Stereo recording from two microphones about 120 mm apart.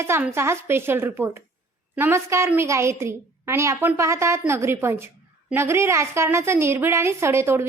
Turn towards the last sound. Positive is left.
turn(degrees=-20)  # may be behind; listen again after turning